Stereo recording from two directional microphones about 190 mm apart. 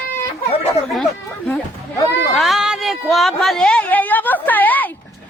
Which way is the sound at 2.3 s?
Centre (ahead or behind).